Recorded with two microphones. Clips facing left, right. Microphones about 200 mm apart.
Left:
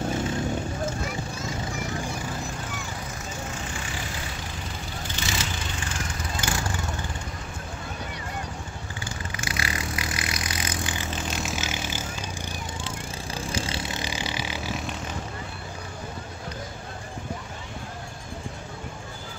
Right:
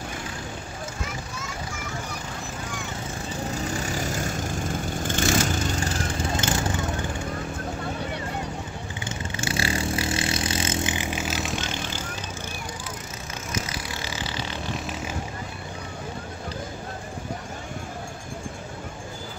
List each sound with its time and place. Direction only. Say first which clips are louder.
3.7 s vehicle: right 7 dB; 40° right (ahead or behind)
6.1 s vehicle: right 4 dB; 25° right (ahead or behind)
9.0 s vehicle: right 4 dB; 25° right (ahead or behind); by 12.0 s 5° left (ahead or behind)
13.5 s vehicle: even; 30° left (ahead or behind); by 15.0 s 5° left (ahead or behind)